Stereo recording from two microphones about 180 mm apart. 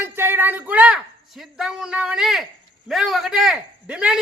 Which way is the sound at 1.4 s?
5° right (ahead or behind).